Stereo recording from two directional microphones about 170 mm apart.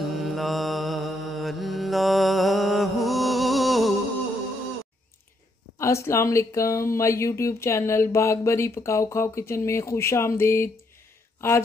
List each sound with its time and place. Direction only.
0.0 s mantra: centre (ahead or behind)
5.8 s speech: 15° left (ahead or behind)